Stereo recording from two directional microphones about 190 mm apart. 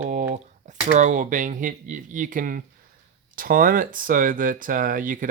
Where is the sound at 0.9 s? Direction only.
40° right (ahead or behind).